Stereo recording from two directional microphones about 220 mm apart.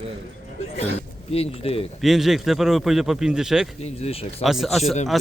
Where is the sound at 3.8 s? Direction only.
25° left (ahead or behind).